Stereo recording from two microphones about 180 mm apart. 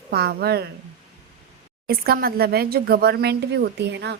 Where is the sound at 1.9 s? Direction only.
55° right (ahead or behind).